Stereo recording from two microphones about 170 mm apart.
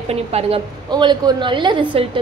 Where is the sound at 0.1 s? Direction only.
35° right (ahead or behind).